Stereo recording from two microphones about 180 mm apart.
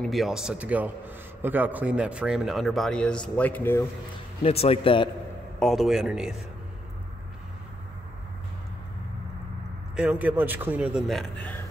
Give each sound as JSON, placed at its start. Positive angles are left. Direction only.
{"t": 0.0, "sound": "a man's voice", "side_deg": 0}
{"t": 4.4, "sound": "speech", "side_deg": 35}
{"t": 5.6, "sound": "a man's voice", "side_deg": 0}
{"t": 9.9, "sound": "a man's voice", "side_deg": -10}